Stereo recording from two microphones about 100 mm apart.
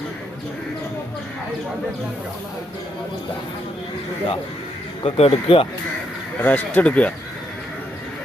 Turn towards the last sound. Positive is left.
turn(degrees=15)  # may be behind; listen again after turning